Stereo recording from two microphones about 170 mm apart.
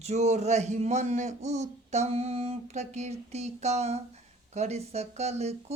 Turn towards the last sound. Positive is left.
turn(degrees=-40)  # may be behind; listen again after turning